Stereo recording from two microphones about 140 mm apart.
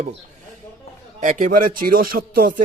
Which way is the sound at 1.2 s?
65° right (ahead or behind).